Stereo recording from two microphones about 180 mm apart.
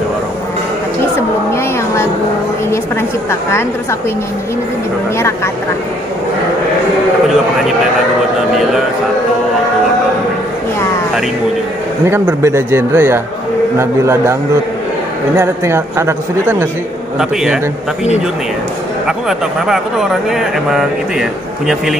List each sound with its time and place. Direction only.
12.1 s a woman's voice: 15° right (ahead or behind)
15.3 s a woman's voice: 15° right (ahead or behind)
17.2 s speech: 5° right (ahead or behind)
19.0 s speech: centre (ahead or behind)